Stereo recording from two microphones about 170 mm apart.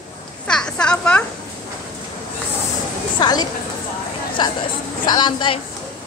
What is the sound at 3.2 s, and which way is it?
A woman's voice, 25° left (ahead or behind).